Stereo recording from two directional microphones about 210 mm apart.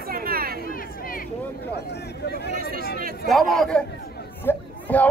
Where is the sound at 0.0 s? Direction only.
45° right (ahead or behind).